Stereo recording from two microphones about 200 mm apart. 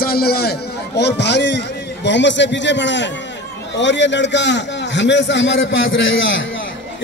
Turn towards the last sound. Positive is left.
turn(degrees=70)  # may be behind; listen again after turning